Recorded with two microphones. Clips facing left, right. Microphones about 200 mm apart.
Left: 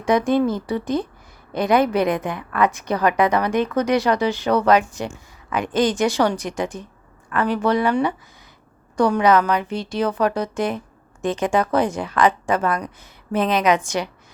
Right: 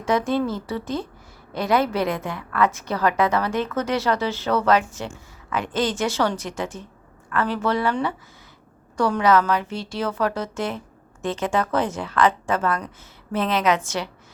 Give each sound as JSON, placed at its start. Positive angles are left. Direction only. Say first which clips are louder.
{"t": 0.0, "sound": "a woman's voice", "louder": "left 4 dB", "side_deg": 15}